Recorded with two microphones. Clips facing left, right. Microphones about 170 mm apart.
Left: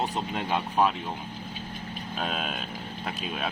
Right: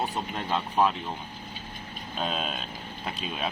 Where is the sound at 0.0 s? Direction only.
15° left (ahead or behind).